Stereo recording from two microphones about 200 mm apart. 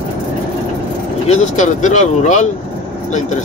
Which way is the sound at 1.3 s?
35° left (ahead or behind).